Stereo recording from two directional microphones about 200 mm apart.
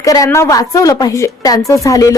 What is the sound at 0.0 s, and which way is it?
A woman's voice, 15° left (ahead or behind).